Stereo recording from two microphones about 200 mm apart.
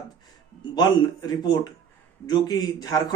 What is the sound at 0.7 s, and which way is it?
A man's voice, 20° left (ahead or behind).